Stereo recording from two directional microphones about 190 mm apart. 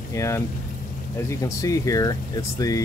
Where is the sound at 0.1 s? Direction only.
15° left (ahead or behind).